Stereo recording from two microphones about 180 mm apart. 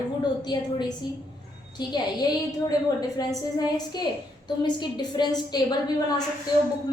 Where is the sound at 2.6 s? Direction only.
20° left (ahead or behind).